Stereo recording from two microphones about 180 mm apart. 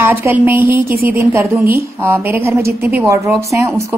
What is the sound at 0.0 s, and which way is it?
Speech, 10° right (ahead or behind).